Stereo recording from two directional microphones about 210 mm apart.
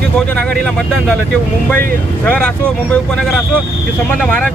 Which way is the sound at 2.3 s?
5° left (ahead or behind).